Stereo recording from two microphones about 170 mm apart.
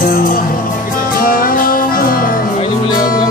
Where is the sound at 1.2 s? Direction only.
55° left (ahead or behind).